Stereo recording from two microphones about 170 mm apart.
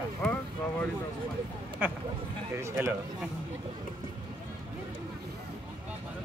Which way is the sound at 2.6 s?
15° right (ahead or behind).